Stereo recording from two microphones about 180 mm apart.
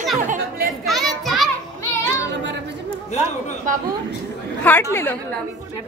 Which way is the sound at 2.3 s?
80° right.